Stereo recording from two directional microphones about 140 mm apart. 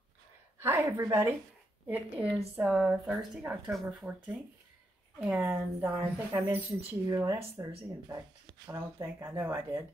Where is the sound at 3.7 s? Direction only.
5° right (ahead or behind); by 7.6 s 20° right (ahead or behind).